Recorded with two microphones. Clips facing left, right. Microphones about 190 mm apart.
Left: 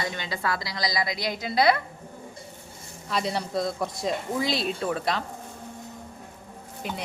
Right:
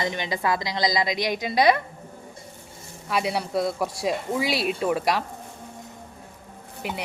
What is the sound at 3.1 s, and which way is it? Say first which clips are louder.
Speech: right 2 dB; 5° right (ahead or behind).